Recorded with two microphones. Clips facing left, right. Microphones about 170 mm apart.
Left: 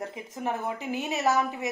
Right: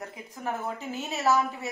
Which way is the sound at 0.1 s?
20° left (ahead or behind).